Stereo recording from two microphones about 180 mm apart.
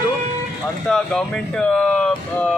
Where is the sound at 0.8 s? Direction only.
5° left (ahead or behind).